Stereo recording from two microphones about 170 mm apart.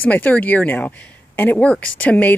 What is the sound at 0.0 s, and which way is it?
Speech, 10° left (ahead or behind).